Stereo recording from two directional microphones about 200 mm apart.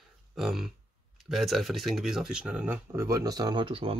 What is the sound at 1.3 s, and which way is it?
Speech, centre (ahead or behind).